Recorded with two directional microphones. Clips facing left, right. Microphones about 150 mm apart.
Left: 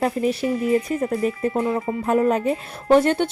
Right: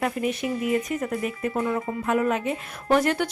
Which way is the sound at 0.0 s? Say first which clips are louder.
Left 5 dB; 35° left (ahead or behind).